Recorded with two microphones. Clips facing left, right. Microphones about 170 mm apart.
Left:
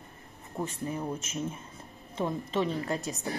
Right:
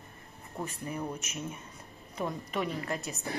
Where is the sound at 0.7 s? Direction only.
25° left (ahead or behind).